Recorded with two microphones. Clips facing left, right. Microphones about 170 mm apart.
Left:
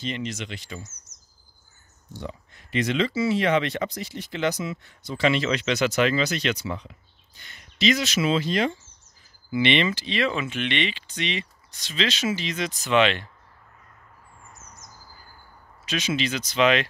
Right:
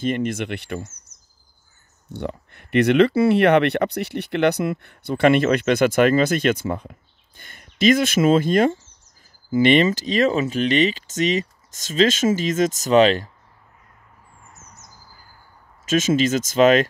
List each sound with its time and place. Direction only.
0.0 s speech: 50° right (ahead or behind)
2.1 s speech: 60° right (ahead or behind); by 13.3 s 40° right (ahead or behind)
15.8 s speech: 45° right (ahead or behind)